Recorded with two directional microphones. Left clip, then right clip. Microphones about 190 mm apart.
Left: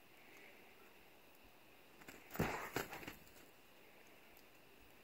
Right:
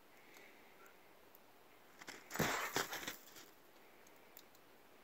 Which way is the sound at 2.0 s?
20° left (ahead or behind).